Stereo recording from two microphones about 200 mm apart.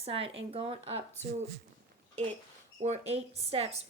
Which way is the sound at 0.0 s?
30° right (ahead or behind).